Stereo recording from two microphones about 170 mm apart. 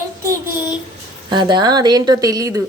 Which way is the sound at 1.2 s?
25° right (ahead or behind).